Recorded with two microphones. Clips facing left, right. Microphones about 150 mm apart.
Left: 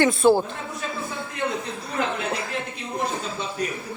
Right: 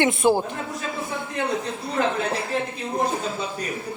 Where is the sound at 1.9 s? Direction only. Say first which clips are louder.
Right 3 dB; 30° right (ahead or behind).